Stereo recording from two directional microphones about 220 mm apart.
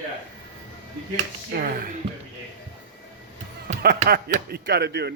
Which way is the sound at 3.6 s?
45° right (ahead or behind).